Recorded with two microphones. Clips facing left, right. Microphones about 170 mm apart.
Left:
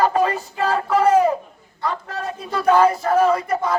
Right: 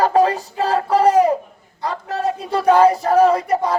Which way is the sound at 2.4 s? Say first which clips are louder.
Right 2 dB; 30° right (ahead or behind).